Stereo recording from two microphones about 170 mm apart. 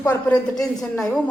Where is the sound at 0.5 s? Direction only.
5° left (ahead or behind).